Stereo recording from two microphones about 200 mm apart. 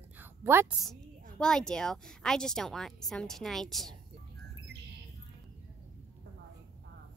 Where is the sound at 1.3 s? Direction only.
5° left (ahead or behind).